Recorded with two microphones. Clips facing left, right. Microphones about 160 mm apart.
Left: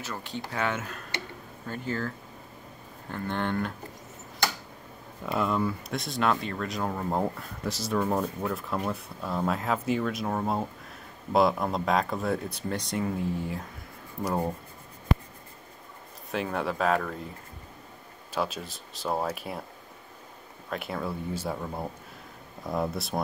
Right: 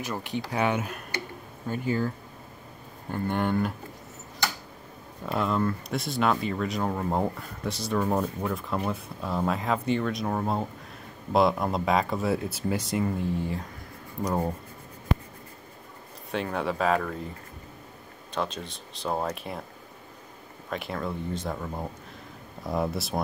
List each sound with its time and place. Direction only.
0.0 s speech: 15° right (ahead or behind)
5.2 s speech: centre (ahead or behind)
16.3 s speech: centre (ahead or behind)
18.3 s speech: 5° left (ahead or behind)
20.7 s speech: centre (ahead or behind)